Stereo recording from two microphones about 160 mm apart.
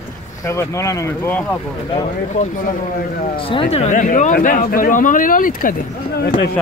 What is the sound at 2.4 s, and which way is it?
Speech, 55° left (ahead or behind).